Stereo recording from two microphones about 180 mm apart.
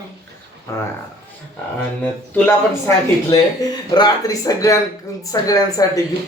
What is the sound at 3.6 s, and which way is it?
Speech, 20° left (ahead or behind).